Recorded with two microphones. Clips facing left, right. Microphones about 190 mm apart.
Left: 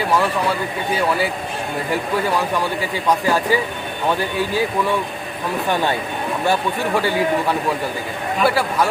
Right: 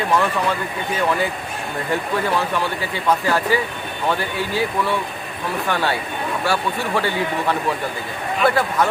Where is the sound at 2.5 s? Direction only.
15° left (ahead or behind).